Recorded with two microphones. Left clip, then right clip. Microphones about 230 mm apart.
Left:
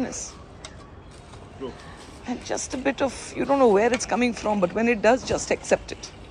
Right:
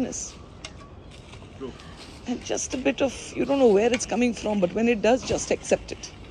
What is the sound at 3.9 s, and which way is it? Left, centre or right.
Speech, centre.